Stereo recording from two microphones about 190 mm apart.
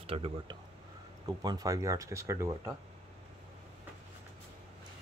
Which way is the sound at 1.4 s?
20° right (ahead or behind).